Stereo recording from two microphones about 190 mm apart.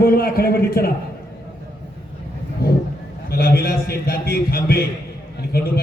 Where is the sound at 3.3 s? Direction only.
55° left (ahead or behind).